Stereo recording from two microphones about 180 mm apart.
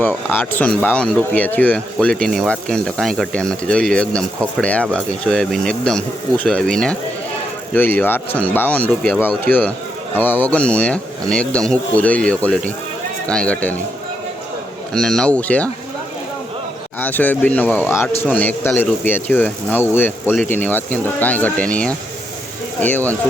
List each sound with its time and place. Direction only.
0.0 s speech: 10° left (ahead or behind)
14.9 s speech: centre (ahead or behind)
17.0 s speech: 10° left (ahead or behind)